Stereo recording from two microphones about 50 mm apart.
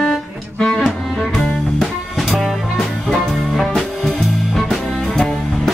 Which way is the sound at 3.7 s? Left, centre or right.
Centre.